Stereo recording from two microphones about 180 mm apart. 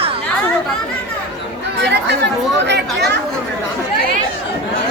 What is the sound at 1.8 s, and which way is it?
Chatter, 70° right (ahead or behind).